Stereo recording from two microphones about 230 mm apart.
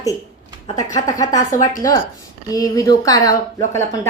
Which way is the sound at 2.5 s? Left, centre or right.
Centre.